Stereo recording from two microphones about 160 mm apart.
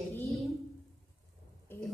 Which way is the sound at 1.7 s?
15° left (ahead or behind).